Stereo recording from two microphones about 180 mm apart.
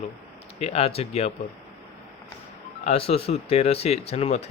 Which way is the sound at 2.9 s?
35° left (ahead or behind).